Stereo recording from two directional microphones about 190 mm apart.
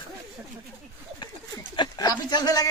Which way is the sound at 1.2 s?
20° left (ahead or behind).